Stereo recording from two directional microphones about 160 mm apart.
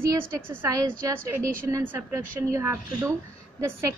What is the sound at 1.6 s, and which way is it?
A woman's voice, 15° right (ahead or behind).